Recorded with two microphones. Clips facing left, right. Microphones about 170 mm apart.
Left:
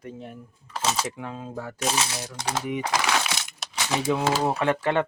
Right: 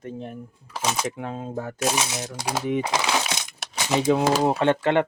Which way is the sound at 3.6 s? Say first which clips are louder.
Right 1 dB; 60° right (ahead or behind).